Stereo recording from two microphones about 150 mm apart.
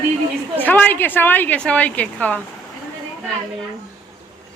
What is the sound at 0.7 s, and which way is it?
A woman's voice, 10° left (ahead or behind).